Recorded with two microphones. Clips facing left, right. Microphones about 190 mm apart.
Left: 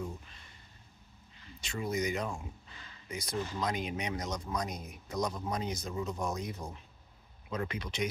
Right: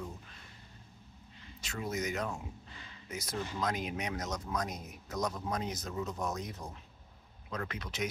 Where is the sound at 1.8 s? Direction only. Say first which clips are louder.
Left 2 dB; 5° right (ahead or behind).